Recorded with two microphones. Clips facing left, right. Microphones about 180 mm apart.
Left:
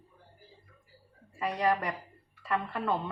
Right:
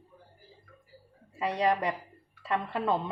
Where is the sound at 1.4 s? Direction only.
25° right (ahead or behind).